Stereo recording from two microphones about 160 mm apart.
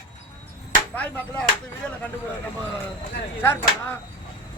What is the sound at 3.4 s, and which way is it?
Speech, 15° left (ahead or behind).